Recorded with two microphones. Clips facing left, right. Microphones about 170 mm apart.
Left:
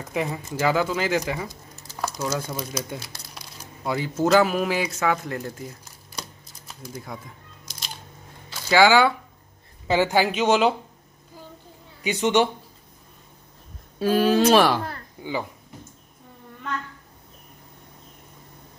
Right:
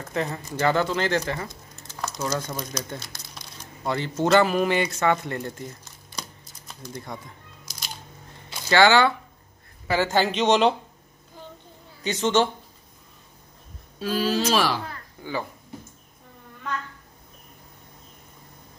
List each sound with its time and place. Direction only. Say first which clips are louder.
0.0 s speech: left 1 dB; 10° left (ahead or behind)
6.8 s a sound: even; 5° left (ahead or behind)
8.6 s speech: left 1 dB; 10° left (ahead or behind)
12.0 s speech: left 1 dB; 10° left (ahead or behind)
13.9 s speech: left 5 dB; 55° left (ahead or behind)
15.2 s speech: left 3 dB; 15° left (ahead or behind)